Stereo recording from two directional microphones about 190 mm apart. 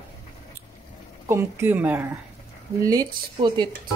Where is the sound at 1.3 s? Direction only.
10° right (ahead or behind).